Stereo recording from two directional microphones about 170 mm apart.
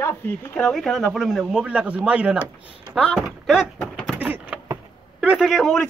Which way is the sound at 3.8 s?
5° left (ahead or behind).